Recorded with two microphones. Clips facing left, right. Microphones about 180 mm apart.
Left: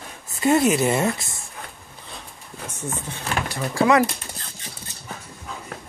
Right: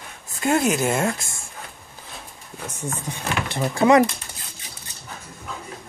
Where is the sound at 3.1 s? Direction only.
15° right (ahead or behind).